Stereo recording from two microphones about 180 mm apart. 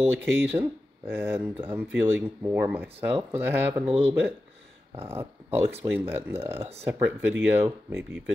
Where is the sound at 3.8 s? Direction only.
30° right (ahead or behind).